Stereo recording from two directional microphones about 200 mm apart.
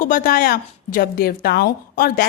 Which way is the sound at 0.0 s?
40° left (ahead or behind).